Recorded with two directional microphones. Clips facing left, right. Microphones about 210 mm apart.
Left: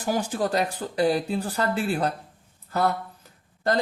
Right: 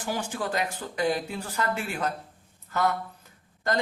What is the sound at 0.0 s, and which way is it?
Speech, 40° left (ahead or behind).